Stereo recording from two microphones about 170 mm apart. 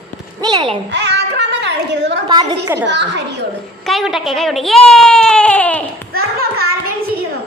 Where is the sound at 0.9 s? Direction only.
80° right.